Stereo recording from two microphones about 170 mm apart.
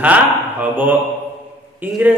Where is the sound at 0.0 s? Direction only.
10° right (ahead or behind).